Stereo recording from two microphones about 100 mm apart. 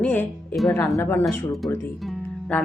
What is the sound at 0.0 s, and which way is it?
A woman's voice, 20° left (ahead or behind).